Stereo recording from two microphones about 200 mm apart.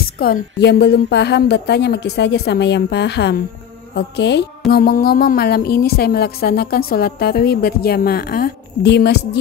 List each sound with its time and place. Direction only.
0.0 s speech: 50° left (ahead or behind)
3.9 s music: 60° left (ahead or behind)